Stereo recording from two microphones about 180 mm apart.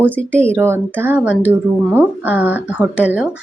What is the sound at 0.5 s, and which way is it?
A woman's voice, 10° right (ahead or behind).